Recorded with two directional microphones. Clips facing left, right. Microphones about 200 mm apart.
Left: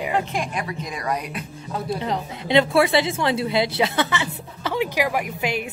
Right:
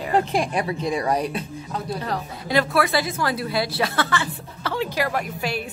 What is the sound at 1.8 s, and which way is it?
A woman's voice, 20° left (ahead or behind).